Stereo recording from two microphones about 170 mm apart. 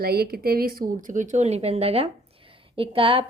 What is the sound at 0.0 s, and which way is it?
A woman's voice, 65° right (ahead or behind).